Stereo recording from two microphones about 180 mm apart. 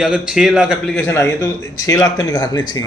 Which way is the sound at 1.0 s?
15° left (ahead or behind).